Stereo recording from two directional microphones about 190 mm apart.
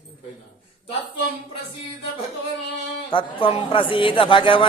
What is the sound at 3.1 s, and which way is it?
A man's voice, 25° left (ahead or behind).